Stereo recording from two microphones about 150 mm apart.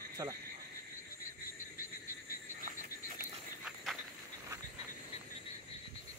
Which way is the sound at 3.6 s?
Centre (ahead or behind).